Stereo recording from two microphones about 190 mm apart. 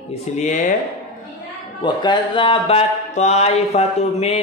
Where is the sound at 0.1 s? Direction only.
40° left (ahead or behind).